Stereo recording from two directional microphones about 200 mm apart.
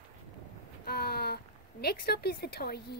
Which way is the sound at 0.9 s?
50° left (ahead or behind).